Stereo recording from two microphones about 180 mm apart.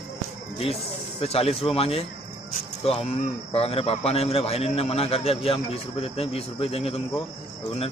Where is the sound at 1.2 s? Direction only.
35° left (ahead or behind).